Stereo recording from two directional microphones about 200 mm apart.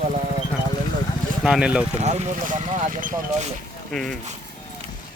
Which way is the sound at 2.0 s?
35° right (ahead or behind).